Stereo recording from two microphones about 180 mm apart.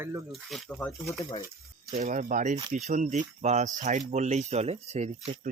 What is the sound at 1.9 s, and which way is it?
Speech, 45° right (ahead or behind).